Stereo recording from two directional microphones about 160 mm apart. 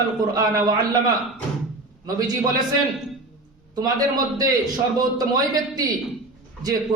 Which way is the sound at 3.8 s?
25° right (ahead or behind).